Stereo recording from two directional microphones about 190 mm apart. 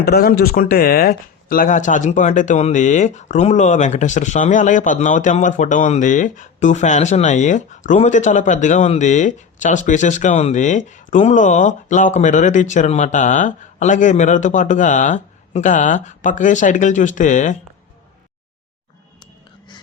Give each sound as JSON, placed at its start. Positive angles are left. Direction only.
{"t": 0.0, "sound": "speech", "side_deg": 55}
{"t": 19.2, "sound": "music", "side_deg": 25}